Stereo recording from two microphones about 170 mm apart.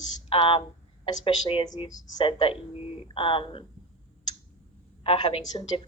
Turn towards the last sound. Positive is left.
turn(degrees=30)  # may be behind; listen again after turning